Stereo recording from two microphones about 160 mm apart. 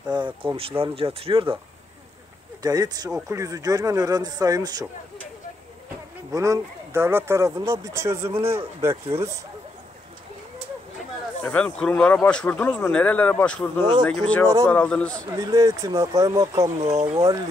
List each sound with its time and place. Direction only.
0.1 s speech: 30° right (ahead or behind)
2.6 s speech: 25° right (ahead or behind)
6.3 s speech: 20° right (ahead or behind)
11.4 s speech: 10° left (ahead or behind)
15.1 s speech: 20° right (ahead or behind)
16.9 s speech: 35° right (ahead or behind)